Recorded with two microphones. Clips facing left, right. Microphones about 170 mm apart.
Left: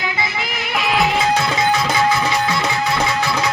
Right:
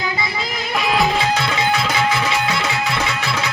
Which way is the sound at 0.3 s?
25° right (ahead or behind).